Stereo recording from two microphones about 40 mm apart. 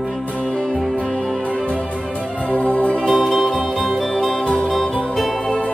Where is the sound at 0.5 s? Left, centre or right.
Left.